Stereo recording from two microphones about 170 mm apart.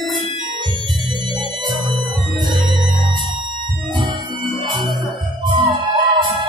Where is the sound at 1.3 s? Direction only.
25° right (ahead or behind).